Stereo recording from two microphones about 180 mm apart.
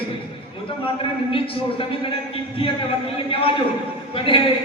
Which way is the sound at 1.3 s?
30° left (ahead or behind).